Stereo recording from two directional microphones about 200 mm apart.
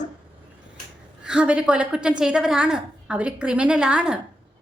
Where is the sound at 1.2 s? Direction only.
5° right (ahead or behind).